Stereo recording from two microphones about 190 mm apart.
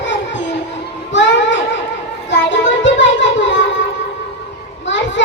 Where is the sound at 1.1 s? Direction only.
70° left (ahead or behind).